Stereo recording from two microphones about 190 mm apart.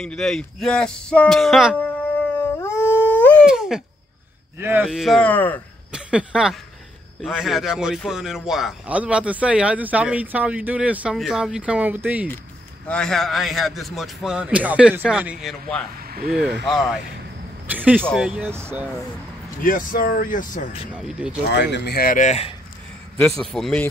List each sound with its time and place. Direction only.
0.0 s a man's voice: 5° left (ahead or behind)
2.3 s dog: 10° left (ahead or behind)
3.4 s a sound: centre (ahead or behind)
4.6 s a man's voice: 10° right (ahead or behind)
4.8 s a man's voice: centre (ahead or behind)
5.9 s a sound: 5° right (ahead or behind)
7.2 s a man's voice: centre (ahead or behind)
12.8 s a man's voice: 5° left (ahead or behind)
16.0 s speech: 55° right (ahead or behind)
16.6 s a man's voice: centre (ahead or behind)
19.6 s speech: 45° left (ahead or behind)
20.9 s a man's voice: 5° right (ahead or behind)
21.5 s speech: 65° left (ahead or behind); by 22.5 s 35° left (ahead or behind)
23.4 s a man's voice: 5° left (ahead or behind)